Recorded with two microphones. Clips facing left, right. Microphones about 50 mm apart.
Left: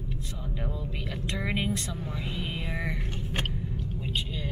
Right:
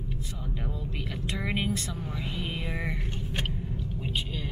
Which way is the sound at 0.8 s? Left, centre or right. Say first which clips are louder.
Even; centre.